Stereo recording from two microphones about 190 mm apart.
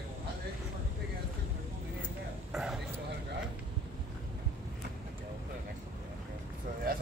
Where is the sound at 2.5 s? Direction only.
5° right (ahead or behind).